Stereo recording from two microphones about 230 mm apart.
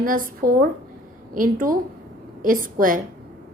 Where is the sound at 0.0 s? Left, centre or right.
Right.